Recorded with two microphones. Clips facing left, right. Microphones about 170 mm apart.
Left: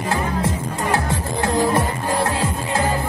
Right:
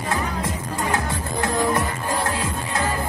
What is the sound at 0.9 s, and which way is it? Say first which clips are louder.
Music: left 5 dB; 30° left (ahead or behind).